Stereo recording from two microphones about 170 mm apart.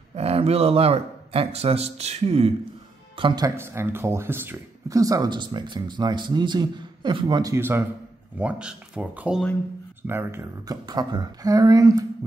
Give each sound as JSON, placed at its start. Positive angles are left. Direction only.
{"t": 0.1, "sound": "a man's voice", "side_deg": -35}
{"t": 3.2, "sound": "speech", "side_deg": -25}
{"t": 7.5, "sound": "speech", "side_deg": -15}